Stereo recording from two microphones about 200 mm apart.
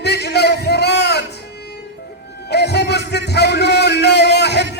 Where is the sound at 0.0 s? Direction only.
55° left (ahead or behind).